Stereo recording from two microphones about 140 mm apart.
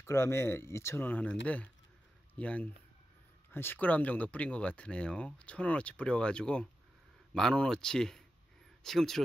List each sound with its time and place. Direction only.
0.0 s speech: 20° left (ahead or behind); by 9.2 s centre (ahead or behind)